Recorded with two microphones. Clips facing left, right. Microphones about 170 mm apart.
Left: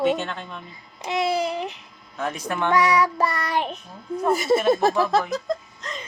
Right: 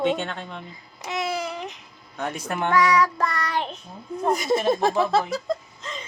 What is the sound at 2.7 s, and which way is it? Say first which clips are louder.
Child singing: even; 15° left (ahead or behind).